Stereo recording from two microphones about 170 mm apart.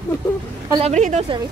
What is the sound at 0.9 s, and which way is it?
Speech, 45° right (ahead or behind).